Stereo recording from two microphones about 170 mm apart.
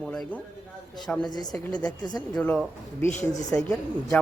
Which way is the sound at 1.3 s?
25° left (ahead or behind).